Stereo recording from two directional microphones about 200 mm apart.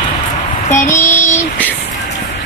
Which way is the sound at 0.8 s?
10° left (ahead or behind).